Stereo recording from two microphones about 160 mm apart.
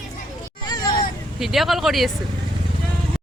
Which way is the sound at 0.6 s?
25° left (ahead or behind).